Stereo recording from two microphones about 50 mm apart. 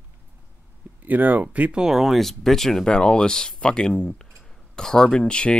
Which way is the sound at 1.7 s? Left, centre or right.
Centre.